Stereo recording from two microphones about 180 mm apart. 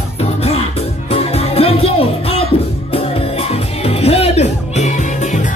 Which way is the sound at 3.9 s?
35° left (ahead or behind).